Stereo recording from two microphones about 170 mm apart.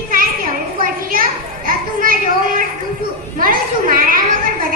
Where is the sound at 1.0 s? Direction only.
55° right (ahead or behind).